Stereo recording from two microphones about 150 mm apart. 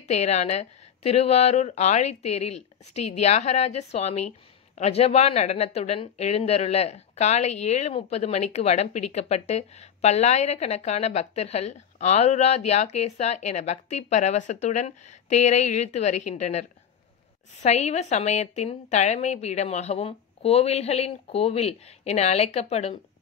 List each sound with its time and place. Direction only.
0.1 s speech: 45° left (ahead or behind)